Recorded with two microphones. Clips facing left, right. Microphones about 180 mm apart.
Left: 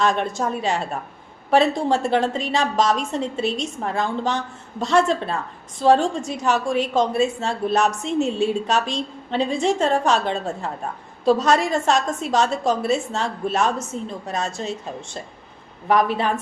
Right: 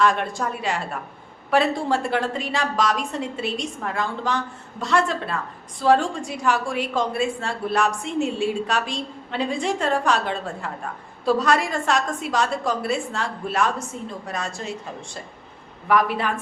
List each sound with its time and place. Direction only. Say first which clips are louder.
0.0 s a woman's voice: left 1 dB; 20° left (ahead or behind)